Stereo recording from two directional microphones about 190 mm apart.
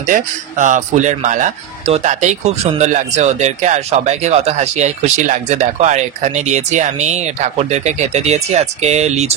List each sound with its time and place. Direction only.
0.0 s speech: 40° right (ahead or behind)